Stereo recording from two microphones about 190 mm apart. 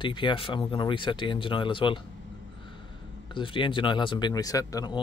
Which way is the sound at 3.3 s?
25° left (ahead or behind).